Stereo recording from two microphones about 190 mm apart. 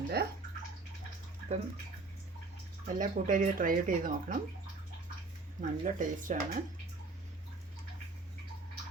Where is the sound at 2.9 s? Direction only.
45° right (ahead or behind).